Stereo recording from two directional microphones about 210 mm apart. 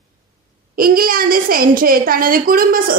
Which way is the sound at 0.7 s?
45° right (ahead or behind).